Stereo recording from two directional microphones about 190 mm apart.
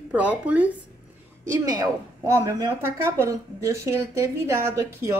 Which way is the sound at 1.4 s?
20° right (ahead or behind).